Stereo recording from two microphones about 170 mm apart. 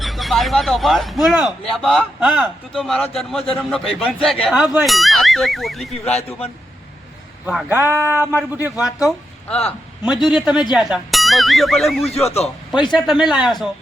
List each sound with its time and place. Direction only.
0.0 s a man's voice: centre (ahead or behind)
6.1 s a man's voice: 35° left (ahead or behind)
7.4 s a man's voice: 10° right (ahead or behind)
9.0 s a woman's voice: 5° left (ahead or behind)